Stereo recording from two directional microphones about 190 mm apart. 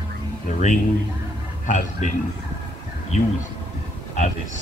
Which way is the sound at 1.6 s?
40° left (ahead or behind).